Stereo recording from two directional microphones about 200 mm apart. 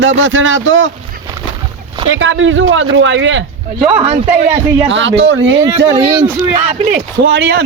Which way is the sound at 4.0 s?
30° right (ahead or behind).